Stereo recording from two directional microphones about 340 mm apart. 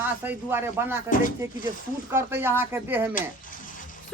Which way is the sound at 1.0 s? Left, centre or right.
Left.